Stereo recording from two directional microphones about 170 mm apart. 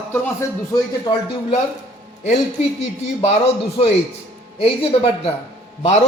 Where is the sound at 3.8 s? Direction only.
40° left (ahead or behind).